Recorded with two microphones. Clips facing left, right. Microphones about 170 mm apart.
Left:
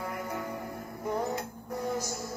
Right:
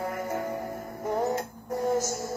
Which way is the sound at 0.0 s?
45° right (ahead or behind).